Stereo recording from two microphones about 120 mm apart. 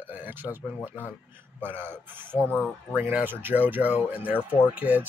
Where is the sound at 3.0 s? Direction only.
15° right (ahead or behind).